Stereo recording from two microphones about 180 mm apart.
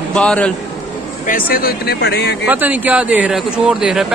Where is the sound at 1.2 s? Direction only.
55° left (ahead or behind).